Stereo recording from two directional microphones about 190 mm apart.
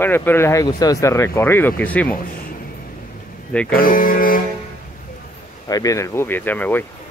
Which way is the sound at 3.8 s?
45° left (ahead or behind).